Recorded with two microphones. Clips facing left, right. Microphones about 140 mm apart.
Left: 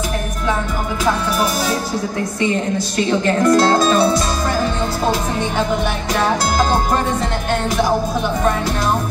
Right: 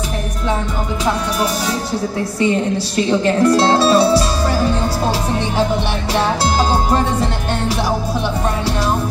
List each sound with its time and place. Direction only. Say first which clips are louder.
3.4 s speech: even; 30° right (ahead or behind)